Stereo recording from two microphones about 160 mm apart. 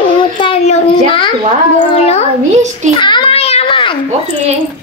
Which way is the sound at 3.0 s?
35° left (ahead or behind).